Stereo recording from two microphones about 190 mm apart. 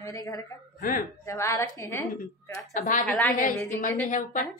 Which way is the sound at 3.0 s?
5° left (ahead or behind).